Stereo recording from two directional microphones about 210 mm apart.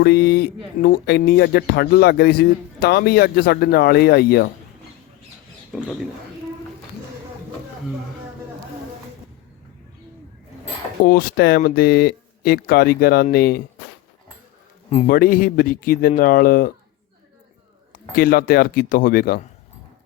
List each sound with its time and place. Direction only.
0.0 s speech: 50° left (ahead or behind)
5.7 s speech: 5° right (ahead or behind)
11.0 s speech: 45° left (ahead or behind)
14.8 s speech: 35° left (ahead or behind)
18.1 s speech: 45° left (ahead or behind)